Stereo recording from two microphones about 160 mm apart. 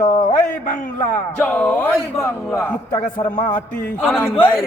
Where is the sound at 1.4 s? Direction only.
5° left (ahead or behind).